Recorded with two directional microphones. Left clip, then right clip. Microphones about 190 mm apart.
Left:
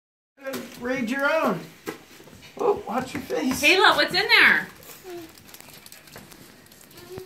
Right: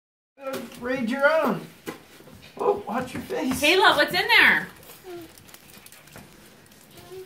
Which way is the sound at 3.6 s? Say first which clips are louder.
Left 1 dB; 45° right (ahead or behind).